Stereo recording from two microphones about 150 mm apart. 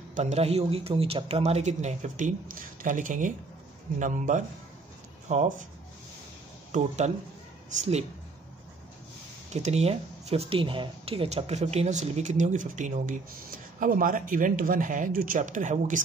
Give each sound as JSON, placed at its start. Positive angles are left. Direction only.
{"t": 0.1, "sound": "a man's voice", "side_deg": -45}
{"t": 6.7, "sound": "a man's voice", "side_deg": -55}
{"t": 9.5, "sound": "speech", "side_deg": -45}